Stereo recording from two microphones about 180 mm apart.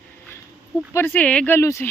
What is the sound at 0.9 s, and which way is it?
Speech, 10° left (ahead or behind).